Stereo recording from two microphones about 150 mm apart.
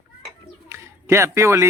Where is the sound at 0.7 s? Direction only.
20° right (ahead or behind).